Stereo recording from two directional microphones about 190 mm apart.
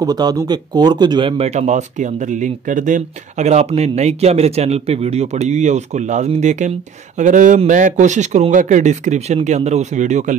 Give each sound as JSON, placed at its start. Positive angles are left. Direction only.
{"t": 0.0, "sound": "speech", "side_deg": -20}